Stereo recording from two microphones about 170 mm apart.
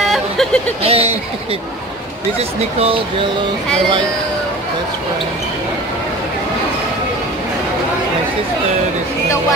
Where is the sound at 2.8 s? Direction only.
35° right (ahead or behind).